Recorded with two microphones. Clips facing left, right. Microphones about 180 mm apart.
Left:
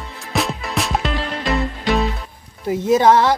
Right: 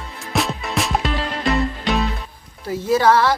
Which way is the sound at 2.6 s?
20° left (ahead or behind).